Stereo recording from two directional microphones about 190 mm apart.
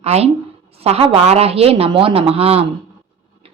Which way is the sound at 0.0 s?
35° right (ahead or behind).